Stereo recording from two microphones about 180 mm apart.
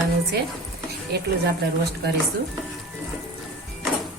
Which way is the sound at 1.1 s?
60° right (ahead or behind).